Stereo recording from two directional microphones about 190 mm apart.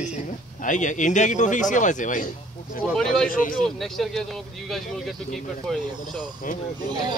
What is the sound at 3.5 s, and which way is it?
Speech, 5° left (ahead or behind).